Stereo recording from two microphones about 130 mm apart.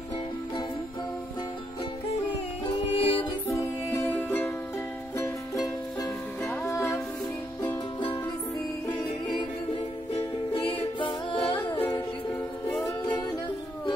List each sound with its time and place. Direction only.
2.9 s music: 50° left (ahead or behind)
3.4 s music: 25° left (ahead or behind)
5.1 s music: 25° left (ahead or behind)
7.6 s music: 35° left (ahead or behind)
10.1 s music: 45° left (ahead or behind)